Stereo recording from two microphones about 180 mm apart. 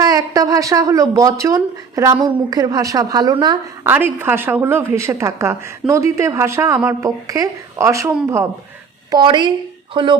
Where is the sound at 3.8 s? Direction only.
10° right (ahead or behind).